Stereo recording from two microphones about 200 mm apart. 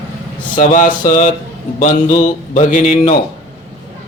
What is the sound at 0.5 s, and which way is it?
Speech, 40° left (ahead or behind).